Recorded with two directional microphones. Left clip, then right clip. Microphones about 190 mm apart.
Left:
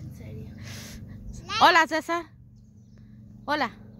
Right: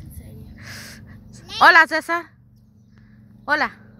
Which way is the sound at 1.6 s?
Centre (ahead or behind).